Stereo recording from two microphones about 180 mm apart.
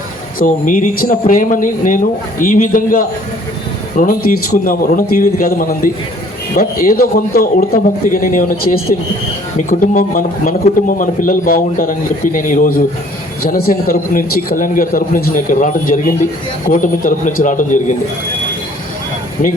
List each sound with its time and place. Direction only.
0.3 s a man's voice: 50° left (ahead or behind)